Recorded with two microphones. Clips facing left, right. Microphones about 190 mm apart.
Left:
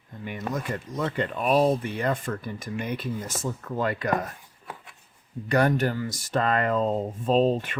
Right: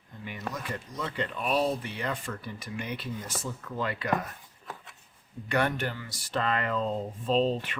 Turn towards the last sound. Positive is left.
turn(degrees=45)  # may be behind; listen again after turning